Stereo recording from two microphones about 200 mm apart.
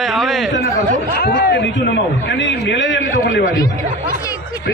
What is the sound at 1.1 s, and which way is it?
A man's voice, 55° left (ahead or behind).